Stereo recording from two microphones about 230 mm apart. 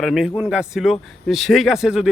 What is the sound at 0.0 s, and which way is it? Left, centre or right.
Speech, centre.